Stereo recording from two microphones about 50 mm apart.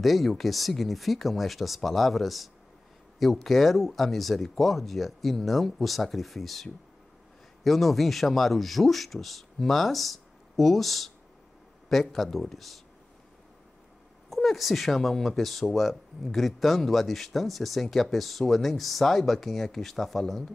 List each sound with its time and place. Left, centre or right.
0.0 s speech: centre
14.3 s speech: centre